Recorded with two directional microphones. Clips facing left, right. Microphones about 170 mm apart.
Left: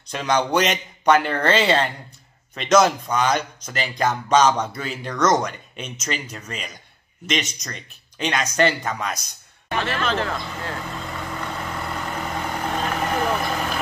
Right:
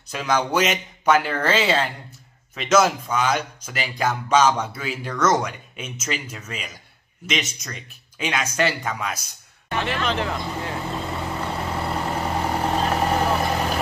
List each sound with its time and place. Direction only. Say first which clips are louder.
0.1 s a man's voice: left 1 dB; 5° right (ahead or behind)
9.8 s speech: left 1 dB; 15° right (ahead or behind)
11.1 s vehicle: right 3 dB; 30° right (ahead or behind)